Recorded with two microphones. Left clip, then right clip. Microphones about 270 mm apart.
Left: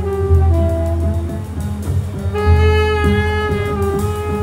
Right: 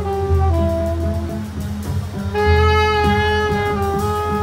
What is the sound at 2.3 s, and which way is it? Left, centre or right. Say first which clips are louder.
Music: right 1 dB; centre.